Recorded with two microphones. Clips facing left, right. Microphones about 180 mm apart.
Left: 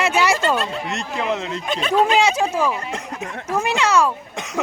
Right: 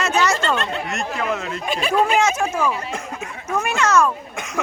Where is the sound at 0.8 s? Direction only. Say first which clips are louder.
Even; 20° left (ahead or behind).